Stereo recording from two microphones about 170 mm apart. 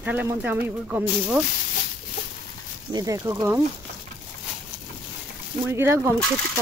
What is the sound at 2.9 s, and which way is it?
Speech, 20° right (ahead or behind).